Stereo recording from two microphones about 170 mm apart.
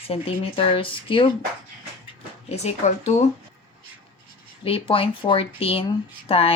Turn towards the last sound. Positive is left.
turn(degrees=35)  # may be behind; listen again after turning